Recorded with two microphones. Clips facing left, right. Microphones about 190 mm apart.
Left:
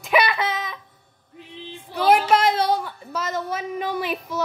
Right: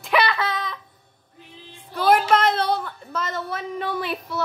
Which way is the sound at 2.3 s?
10° left (ahead or behind).